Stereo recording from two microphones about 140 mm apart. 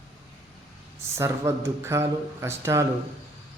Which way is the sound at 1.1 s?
20° right (ahead or behind).